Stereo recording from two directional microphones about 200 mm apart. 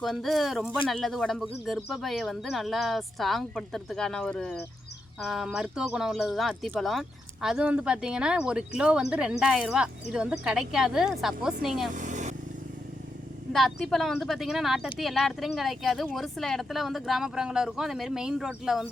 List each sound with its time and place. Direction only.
0.0 s speech: centre (ahead or behind)
11.9 s vehicle: 40° right (ahead or behind)
13.5 s speech: centre (ahead or behind)